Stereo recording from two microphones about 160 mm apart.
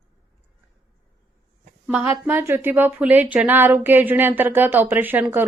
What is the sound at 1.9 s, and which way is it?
Speech, 10° right (ahead or behind).